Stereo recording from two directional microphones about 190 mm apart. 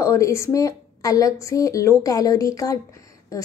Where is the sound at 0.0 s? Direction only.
15° left (ahead or behind).